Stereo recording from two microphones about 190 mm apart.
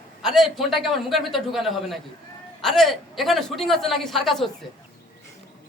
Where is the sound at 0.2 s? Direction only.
Centre (ahead or behind).